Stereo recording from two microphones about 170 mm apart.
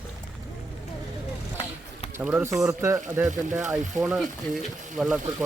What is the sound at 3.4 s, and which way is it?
Speech, 45° right (ahead or behind).